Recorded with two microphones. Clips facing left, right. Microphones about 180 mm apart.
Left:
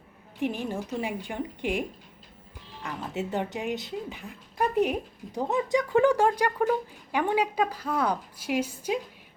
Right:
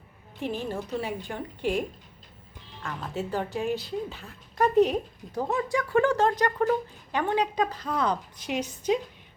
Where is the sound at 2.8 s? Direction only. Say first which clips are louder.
Even; 20° left (ahead or behind).